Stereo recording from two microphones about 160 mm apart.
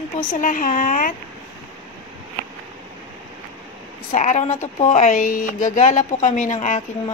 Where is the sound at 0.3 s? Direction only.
55° left (ahead or behind).